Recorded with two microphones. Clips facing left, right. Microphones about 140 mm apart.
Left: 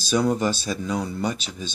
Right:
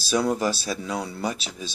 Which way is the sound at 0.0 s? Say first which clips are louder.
Left 2 dB; centre (ahead or behind).